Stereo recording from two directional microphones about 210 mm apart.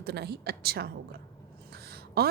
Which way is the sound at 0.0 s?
50° right (ahead or behind).